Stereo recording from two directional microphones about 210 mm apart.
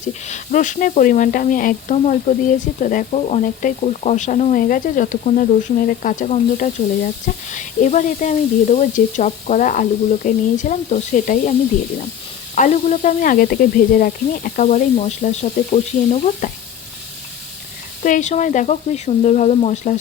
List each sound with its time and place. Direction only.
0.0 s speech: 35° left (ahead or behind)
12.5 s speech: 35° left (ahead or behind)
18.0 s speech: 35° left (ahead or behind)